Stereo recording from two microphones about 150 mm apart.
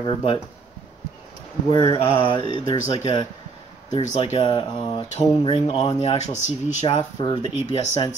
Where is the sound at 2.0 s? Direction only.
40° left (ahead or behind).